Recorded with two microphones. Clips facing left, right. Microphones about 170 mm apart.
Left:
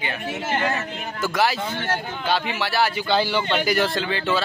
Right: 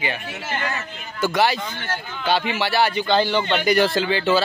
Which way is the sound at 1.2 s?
Centre (ahead or behind).